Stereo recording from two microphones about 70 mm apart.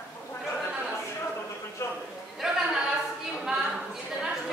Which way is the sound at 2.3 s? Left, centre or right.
Centre.